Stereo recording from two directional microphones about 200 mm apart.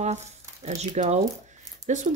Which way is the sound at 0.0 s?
35° right (ahead or behind).